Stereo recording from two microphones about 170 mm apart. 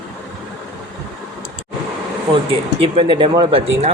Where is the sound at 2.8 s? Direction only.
30° right (ahead or behind).